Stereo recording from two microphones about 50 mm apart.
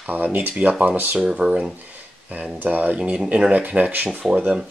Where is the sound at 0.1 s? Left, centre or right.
Right.